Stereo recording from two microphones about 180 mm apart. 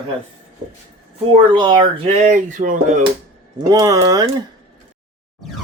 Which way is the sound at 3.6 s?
20° right (ahead or behind).